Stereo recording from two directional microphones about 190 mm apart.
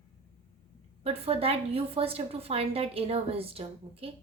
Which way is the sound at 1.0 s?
30° right (ahead or behind).